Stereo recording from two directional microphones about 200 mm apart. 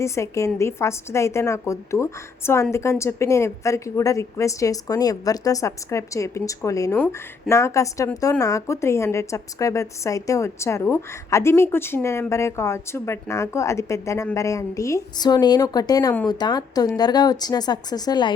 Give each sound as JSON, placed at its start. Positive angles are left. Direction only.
{"t": 0.0, "sound": "speech", "side_deg": 15}